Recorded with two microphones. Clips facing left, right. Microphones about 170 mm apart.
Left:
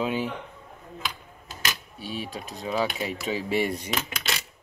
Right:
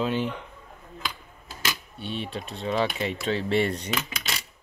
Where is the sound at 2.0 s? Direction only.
5° left (ahead or behind).